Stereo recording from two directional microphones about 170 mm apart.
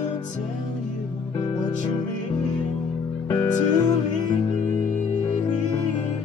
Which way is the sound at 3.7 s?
25° left (ahead or behind).